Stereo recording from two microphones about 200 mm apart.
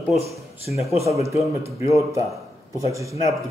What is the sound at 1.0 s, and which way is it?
Speech, 15° right (ahead or behind).